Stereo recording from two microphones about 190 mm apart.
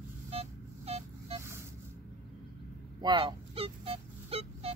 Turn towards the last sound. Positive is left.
turn(degrees=-30)  # may be behind; listen again after turning